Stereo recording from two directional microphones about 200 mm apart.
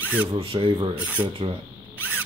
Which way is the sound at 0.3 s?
25° right (ahead or behind).